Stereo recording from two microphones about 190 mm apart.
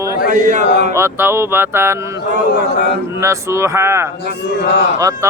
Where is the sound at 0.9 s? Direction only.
15° right (ahead or behind).